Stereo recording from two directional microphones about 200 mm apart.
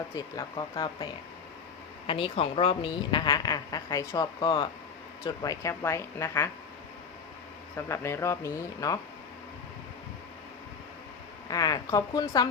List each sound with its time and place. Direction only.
0.2 s a woman's voice: 20° left (ahead or behind)
7.9 s speech: 15° left (ahead or behind)
11.4 s a woman's voice: 20° left (ahead or behind)